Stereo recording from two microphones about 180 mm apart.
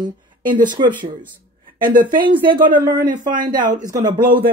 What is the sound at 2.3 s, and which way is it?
Speech, 25° right (ahead or behind).